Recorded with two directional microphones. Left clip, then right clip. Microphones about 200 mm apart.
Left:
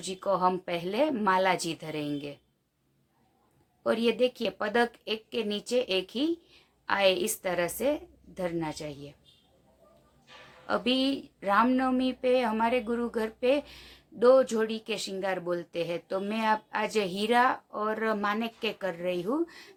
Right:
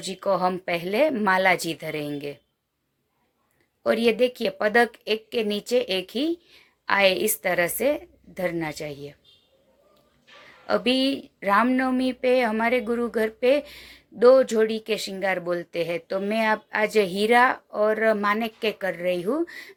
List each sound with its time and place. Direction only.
0.0 s speech: 15° right (ahead or behind)
3.8 s speech: 20° right (ahead or behind)
10.7 s speech: 15° right (ahead or behind)